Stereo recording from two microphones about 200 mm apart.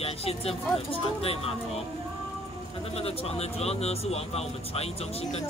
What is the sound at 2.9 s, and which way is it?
Speech, 30° left (ahead or behind).